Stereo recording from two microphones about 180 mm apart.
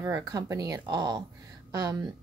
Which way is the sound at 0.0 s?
20° right (ahead or behind).